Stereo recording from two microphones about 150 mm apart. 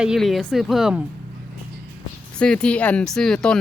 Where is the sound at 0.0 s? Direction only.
Centre (ahead or behind).